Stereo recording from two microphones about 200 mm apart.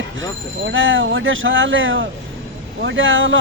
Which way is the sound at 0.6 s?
75° right (ahead or behind).